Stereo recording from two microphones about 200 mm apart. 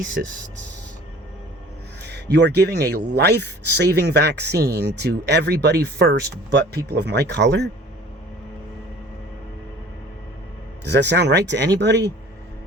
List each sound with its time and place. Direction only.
0.2 s speech: 55° right (ahead or behind)
2.0 s speech: 55° right (ahead or behind)
10.8 s speech: 60° right (ahead or behind)